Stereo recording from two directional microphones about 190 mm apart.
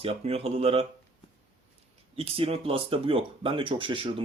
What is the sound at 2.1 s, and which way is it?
Speech, 30° right (ahead or behind).